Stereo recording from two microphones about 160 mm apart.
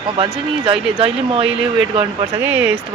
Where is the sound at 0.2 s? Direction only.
35° right (ahead or behind).